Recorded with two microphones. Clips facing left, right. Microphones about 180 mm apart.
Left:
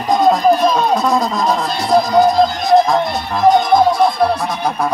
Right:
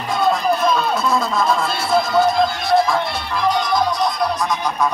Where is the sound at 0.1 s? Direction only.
40° left (ahead or behind); by 4.6 s 55° left (ahead or behind).